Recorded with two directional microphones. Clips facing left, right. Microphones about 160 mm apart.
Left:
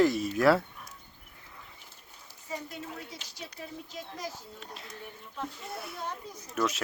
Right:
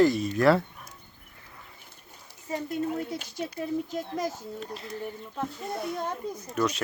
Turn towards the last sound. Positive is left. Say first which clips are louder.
# right 3 dB
turn(degrees=0)  # may be behind; listen again after turning